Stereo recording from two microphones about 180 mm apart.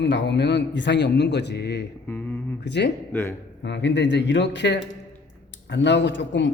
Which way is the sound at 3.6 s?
75° left (ahead or behind).